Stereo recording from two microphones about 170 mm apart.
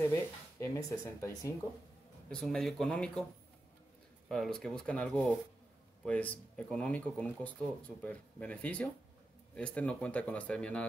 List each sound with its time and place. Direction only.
0.1 s speech: 15° left (ahead or behind)
2.2 s speech: 5° left (ahead or behind)
4.3 s speech: 5° left (ahead or behind)